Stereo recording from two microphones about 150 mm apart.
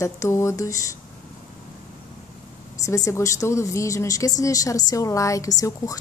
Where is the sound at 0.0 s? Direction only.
20° left (ahead or behind).